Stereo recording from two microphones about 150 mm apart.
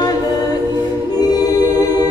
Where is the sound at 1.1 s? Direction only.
25° left (ahead or behind).